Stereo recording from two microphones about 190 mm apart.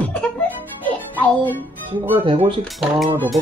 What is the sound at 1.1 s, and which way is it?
Music, 10° left (ahead or behind).